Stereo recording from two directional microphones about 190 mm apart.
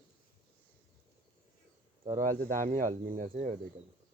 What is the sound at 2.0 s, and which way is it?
Speech, 45° right (ahead or behind).